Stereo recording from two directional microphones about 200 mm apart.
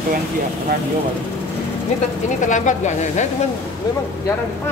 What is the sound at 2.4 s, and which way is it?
Speech, 40° left (ahead or behind).